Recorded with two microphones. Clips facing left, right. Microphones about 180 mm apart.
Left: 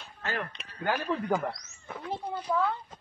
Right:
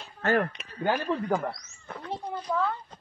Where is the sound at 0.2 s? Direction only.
50° right (ahead or behind).